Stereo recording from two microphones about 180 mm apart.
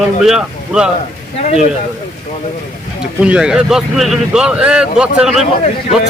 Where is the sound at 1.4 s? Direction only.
40° left (ahead or behind).